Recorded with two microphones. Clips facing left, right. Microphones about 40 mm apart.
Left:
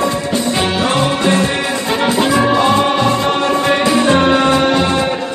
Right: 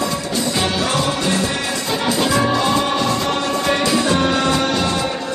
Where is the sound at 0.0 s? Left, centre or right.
Left.